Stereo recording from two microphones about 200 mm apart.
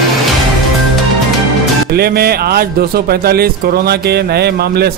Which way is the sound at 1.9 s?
50° right (ahead or behind).